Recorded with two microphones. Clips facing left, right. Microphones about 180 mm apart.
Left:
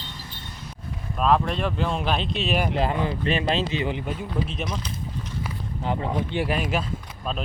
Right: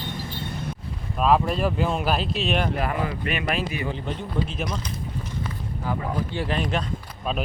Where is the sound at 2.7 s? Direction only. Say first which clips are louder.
Left 2 dB; 25° left (ahead or behind).